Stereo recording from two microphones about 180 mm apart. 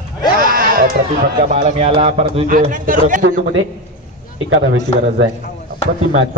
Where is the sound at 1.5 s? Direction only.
35° right (ahead or behind).